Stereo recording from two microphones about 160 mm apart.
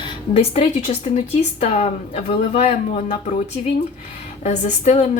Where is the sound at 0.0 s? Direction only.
35° left (ahead or behind).